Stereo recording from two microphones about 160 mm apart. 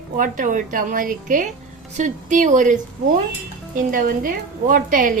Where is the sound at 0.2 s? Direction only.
55° right (ahead or behind).